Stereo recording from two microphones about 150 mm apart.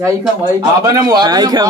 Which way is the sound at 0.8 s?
25° right (ahead or behind).